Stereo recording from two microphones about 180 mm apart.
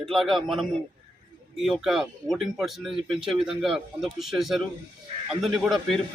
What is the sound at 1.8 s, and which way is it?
Speech, centre (ahead or behind).